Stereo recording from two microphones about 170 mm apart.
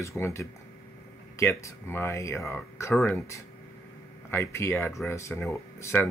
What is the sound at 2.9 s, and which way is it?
Speech, 5° left (ahead or behind).